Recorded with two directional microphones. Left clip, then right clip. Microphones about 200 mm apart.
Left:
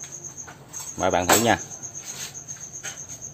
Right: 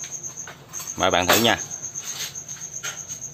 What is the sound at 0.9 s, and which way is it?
Speech, 5° left (ahead or behind).